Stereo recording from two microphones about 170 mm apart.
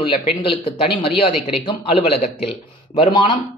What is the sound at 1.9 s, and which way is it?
Speech, 35° left (ahead or behind).